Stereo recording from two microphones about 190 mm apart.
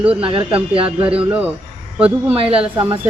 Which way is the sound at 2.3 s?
30° right (ahead or behind).